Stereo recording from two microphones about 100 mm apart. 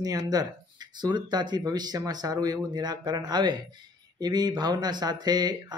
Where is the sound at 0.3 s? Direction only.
40° right (ahead or behind).